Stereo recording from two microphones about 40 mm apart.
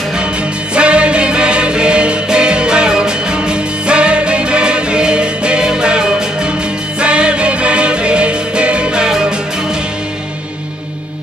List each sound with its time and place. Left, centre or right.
0.7 s music: right